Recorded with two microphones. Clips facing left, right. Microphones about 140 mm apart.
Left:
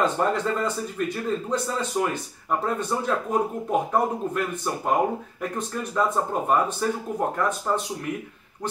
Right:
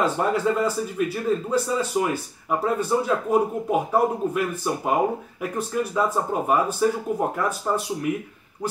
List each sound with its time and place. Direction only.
0.0 s speech: 5° right (ahead or behind)